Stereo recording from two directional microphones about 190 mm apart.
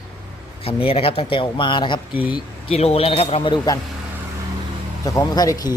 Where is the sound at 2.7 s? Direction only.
30° left (ahead or behind).